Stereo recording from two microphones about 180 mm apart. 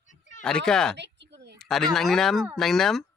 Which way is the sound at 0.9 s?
75° right (ahead or behind).